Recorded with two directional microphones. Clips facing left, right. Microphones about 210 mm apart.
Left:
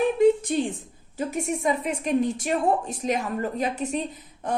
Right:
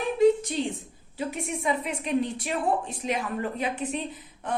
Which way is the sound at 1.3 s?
45° left (ahead or behind).